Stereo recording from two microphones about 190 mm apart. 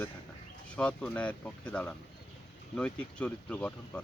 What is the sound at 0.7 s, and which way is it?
Speech, 5° left (ahead or behind).